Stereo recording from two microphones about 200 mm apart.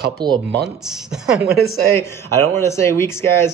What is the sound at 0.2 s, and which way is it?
Speech, 20° right (ahead or behind).